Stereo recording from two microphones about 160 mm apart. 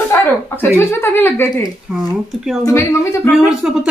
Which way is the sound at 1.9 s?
Centre (ahead or behind).